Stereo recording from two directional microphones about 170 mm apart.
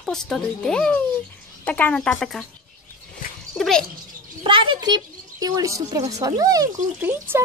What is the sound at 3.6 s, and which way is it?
Speech, 5° left (ahead or behind).